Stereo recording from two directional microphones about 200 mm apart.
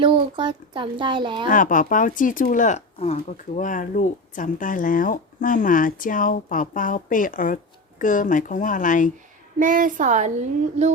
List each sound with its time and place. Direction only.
0.0 s speech: 25° right (ahead or behind)
1.5 s speech: 40° left (ahead or behind)
9.6 s a woman's voice: 40° right (ahead or behind)